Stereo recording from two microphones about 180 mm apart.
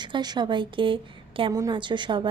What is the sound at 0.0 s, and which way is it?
A woman's voice, 25° right (ahead or behind).